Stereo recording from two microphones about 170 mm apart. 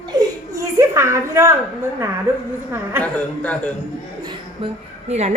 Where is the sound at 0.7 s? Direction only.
15° right (ahead or behind).